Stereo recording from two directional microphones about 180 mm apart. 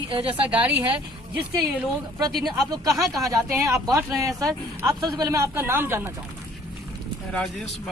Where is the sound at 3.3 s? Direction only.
20° right (ahead or behind).